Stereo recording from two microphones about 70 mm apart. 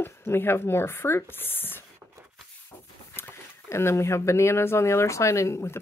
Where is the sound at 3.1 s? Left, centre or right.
Left.